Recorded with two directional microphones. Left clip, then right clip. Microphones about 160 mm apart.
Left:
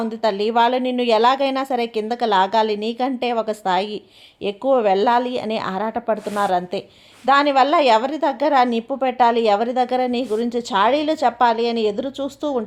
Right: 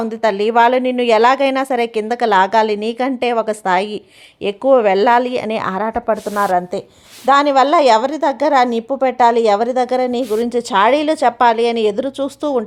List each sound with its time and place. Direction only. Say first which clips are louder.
0.0 s a woman's voice: right 4 dB; 30° right (ahead or behind)